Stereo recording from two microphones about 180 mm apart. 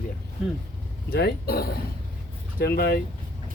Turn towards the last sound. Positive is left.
turn(degrees=60)  # may be behind; listen again after turning